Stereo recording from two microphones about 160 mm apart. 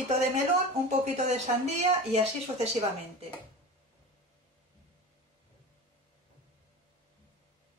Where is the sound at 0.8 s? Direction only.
45° right (ahead or behind).